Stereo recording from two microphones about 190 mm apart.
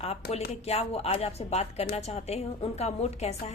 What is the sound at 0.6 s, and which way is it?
A woman's voice, 35° left (ahead or behind).